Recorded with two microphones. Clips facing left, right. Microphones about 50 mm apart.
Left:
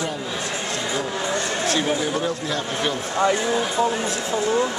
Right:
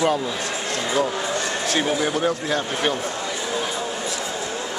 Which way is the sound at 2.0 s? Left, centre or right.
Right.